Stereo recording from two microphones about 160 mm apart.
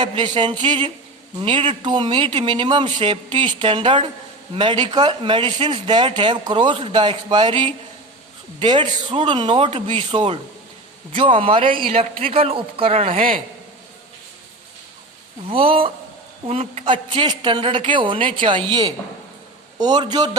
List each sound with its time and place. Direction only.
0.2 s a man's voice: 30° right (ahead or behind)
15.4 s a man's voice: 35° right (ahead or behind)